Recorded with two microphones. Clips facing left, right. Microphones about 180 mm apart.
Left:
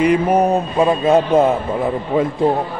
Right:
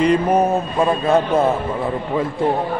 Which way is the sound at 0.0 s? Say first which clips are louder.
Left 1 dB; 10° left (ahead or behind).